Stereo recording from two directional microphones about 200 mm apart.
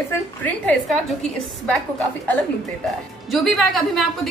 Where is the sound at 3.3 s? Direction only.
Centre (ahead or behind).